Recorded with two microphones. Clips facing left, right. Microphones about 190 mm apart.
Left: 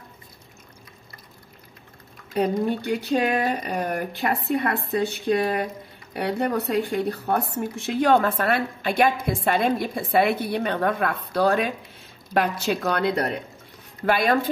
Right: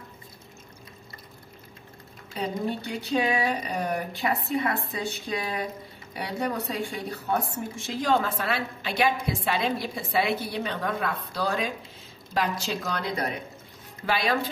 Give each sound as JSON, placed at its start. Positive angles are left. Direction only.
{"t": 2.3, "sound": "a woman's voice", "side_deg": 60}
{"t": 14.0, "sound": "speech", "side_deg": 50}